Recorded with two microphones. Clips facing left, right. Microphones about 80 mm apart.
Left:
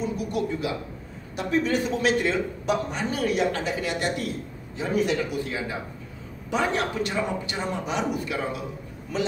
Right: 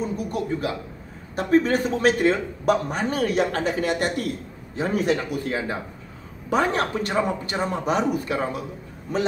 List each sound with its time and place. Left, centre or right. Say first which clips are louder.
0.2 s a man's voice: right 1 dB; right